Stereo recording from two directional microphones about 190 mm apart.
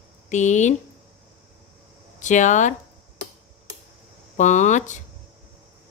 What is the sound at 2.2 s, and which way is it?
Speech, 40° left (ahead or behind).